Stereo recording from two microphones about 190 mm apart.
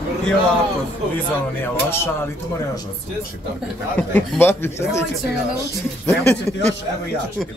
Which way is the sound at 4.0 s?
10° left (ahead or behind).